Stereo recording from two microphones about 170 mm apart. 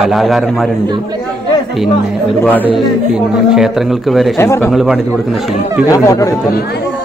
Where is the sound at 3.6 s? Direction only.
Centre (ahead or behind).